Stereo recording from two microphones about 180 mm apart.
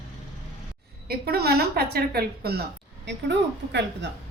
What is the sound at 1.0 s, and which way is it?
A woman's voice, 60° right (ahead or behind).